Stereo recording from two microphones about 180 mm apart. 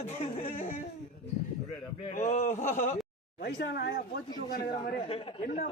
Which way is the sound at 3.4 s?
65° left (ahead or behind).